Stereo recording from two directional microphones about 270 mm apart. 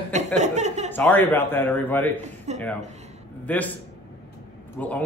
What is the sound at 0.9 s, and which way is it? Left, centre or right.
Speech, centre.